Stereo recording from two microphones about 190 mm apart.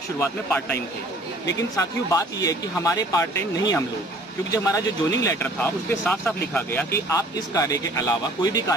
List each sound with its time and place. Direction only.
0.2 s speech: 10° left (ahead or behind)
1.8 s speech: 15° left (ahead or behind)